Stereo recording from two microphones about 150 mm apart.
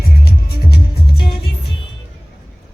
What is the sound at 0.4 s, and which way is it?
Music, 90° left.